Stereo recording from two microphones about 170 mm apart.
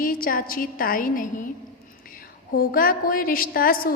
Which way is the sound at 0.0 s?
55° left (ahead or behind).